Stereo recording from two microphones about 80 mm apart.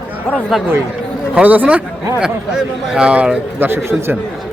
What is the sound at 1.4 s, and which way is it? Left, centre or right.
Speech, centre.